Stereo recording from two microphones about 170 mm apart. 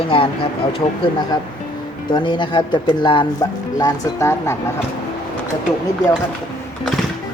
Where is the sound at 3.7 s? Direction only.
20° left (ahead or behind).